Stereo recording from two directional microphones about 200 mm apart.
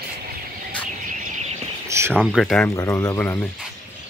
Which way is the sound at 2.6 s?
15° left (ahead or behind).